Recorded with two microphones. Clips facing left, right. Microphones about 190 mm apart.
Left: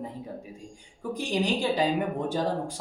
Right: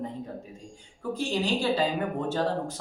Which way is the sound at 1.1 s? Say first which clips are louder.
Even; 15° left (ahead or behind).